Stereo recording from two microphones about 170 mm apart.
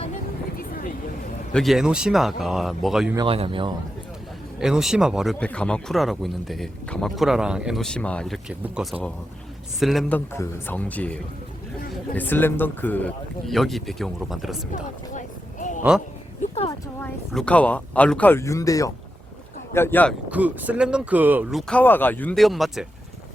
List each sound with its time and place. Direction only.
0.5 s a sound: 55° left (ahead or behind)
1.5 s speech: centre (ahead or behind)
3.2 s a man's voice: 30° right (ahead or behind)
4.6 s speech: 5° right (ahead or behind)
14.7 s a sound: 50° left (ahead or behind)
17.0 s speech: 5° left (ahead or behind)
20.3 s speech: 10° right (ahead or behind)
21.7 s speech: 10° left (ahead or behind)